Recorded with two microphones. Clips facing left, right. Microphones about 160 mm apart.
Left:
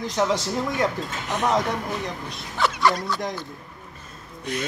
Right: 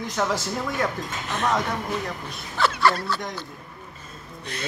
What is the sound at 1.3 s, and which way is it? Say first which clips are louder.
Speech: left 2 dB; 15° left (ahead or behind).